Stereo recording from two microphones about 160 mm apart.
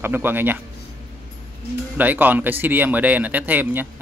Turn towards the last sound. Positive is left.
turn(degrees=-10)  # may be behind; listen again after turning